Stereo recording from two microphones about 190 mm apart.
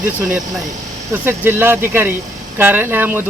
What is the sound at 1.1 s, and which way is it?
Speech, 10° right (ahead or behind).